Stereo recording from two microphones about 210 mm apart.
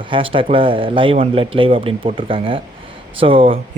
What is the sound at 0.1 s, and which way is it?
Speech, 25° right (ahead or behind).